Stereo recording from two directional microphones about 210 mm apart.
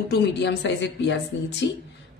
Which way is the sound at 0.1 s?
55° left (ahead or behind).